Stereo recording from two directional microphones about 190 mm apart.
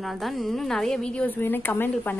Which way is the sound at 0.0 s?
Centre (ahead or behind).